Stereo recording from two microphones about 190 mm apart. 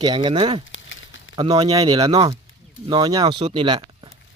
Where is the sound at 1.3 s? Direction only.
25° right (ahead or behind).